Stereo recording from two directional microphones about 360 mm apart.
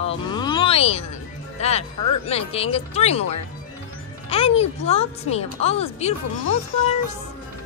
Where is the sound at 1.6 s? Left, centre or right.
Centre.